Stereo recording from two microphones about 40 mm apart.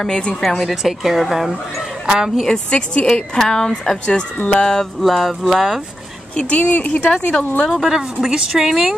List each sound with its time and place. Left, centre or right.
0.4 s speech: centre
2.0 s speech: centre
2.5 s a woman's voice: left
4.5 s a woman's voice: left
5.0 s speech: centre
6.3 s speech: left
7.6 s speech: centre